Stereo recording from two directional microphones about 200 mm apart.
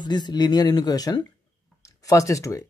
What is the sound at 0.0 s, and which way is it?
Speech, 20° left (ahead or behind).